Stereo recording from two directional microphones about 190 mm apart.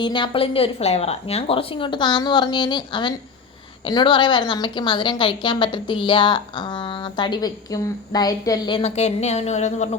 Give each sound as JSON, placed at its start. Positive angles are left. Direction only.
{"t": 0.0, "sound": "a woman's voice", "side_deg": 25}